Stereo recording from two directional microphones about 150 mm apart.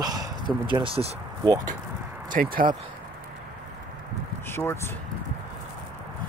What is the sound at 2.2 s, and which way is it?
Speech, 70° right (ahead or behind).